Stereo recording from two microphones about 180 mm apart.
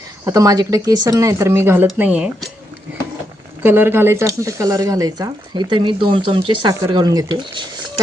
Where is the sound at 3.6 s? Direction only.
10° right (ahead or behind).